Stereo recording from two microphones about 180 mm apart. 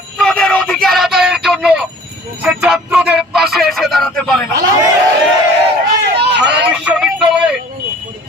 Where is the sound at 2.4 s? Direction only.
5° right (ahead or behind).